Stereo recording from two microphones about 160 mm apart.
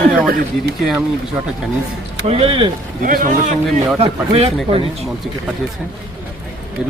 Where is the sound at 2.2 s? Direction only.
35° right (ahead or behind).